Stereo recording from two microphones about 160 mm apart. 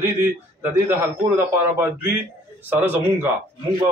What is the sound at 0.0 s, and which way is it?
A man's voice, 15° right (ahead or behind).